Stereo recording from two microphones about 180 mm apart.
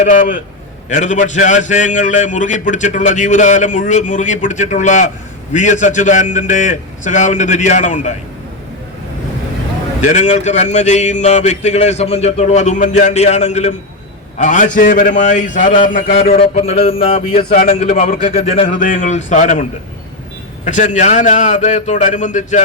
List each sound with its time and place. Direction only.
0.0 s a man's voice: 45° left (ahead or behind)
10.0 s a man's voice: 40° left (ahead or behind)
17.2 s a man's voice: 50° left (ahead or behind)
20.7 s speech: 45° left (ahead or behind)